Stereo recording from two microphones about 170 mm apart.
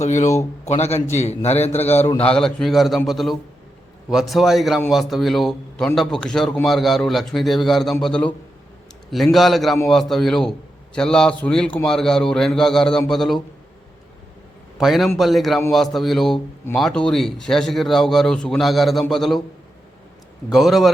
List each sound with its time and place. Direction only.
0.0 s a man's voice: 45° left (ahead or behind)
2.2 s a man's voice: 5° left (ahead or behind)
14.8 s a man's voice: centre (ahead or behind)
20.5 s a man's voice: centre (ahead or behind)